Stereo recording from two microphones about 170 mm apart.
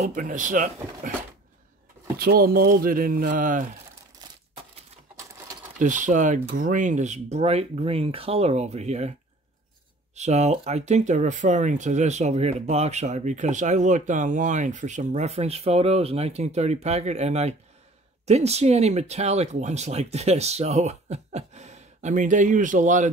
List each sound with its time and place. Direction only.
0.0 s speech: 50° right (ahead or behind)
2.1 s speech: 60° right (ahead or behind)
5.8 s speech: 50° right (ahead or behind)
10.1 s speech: 40° right (ahead or behind)